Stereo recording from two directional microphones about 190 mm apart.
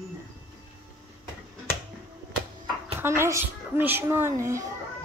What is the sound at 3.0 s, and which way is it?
A child's voice, 15° right (ahead or behind).